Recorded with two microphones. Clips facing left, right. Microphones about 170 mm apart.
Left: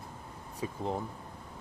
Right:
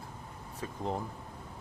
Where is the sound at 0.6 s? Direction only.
10° left (ahead or behind).